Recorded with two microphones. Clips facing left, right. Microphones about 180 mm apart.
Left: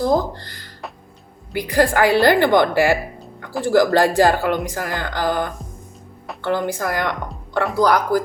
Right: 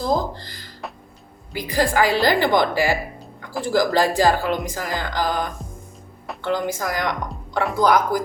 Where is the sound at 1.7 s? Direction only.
60° left (ahead or behind).